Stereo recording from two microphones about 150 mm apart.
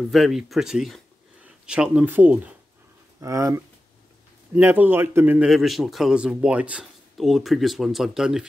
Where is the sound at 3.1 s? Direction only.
20° right (ahead or behind).